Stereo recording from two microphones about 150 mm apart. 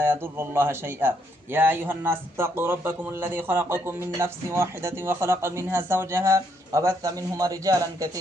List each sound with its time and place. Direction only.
0.0 s speech: 15° right (ahead or behind)